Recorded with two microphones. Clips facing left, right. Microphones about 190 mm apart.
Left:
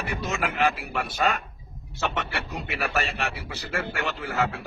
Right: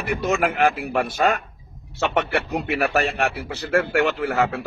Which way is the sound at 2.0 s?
60° right (ahead or behind).